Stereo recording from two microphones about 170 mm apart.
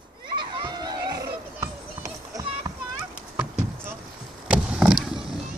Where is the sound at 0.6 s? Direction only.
25° right (ahead or behind).